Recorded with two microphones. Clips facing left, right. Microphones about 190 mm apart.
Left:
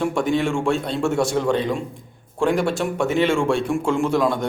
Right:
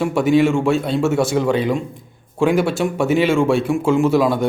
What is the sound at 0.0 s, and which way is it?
A man's voice, 5° right (ahead or behind).